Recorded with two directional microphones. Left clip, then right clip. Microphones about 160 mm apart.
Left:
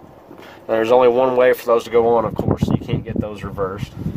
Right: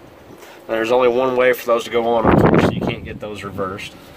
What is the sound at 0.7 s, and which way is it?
Speech, 60° left (ahead or behind).